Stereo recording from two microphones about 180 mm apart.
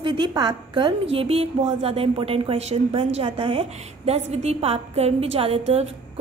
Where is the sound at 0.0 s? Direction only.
25° right (ahead or behind).